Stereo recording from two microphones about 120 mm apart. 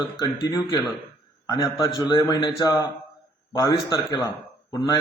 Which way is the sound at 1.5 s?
25° left (ahead or behind).